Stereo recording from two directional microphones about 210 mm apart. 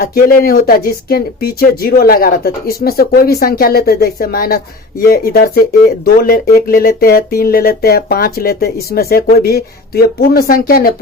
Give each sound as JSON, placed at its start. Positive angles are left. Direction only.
{"t": 0.0, "sound": "speech", "side_deg": 45}